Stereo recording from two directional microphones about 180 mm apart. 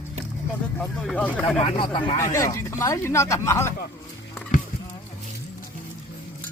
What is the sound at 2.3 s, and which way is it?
Speech, 15° left (ahead or behind).